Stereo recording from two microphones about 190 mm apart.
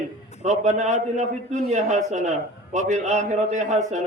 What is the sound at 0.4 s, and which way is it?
A man's voice, 40° right (ahead or behind).